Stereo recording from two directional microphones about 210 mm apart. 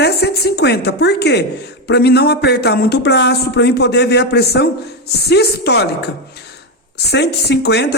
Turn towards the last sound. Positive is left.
turn(degrees=55)  # may be behind; listen again after turning